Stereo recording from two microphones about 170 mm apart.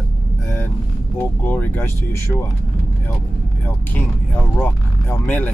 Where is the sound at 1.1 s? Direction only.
10° left (ahead or behind).